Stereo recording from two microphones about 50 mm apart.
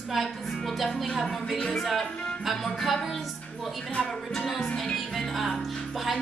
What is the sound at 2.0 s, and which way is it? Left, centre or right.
Speech, centre.